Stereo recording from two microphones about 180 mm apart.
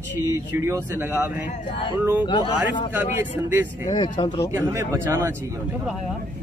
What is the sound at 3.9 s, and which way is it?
Speech, 25° left (ahead or behind).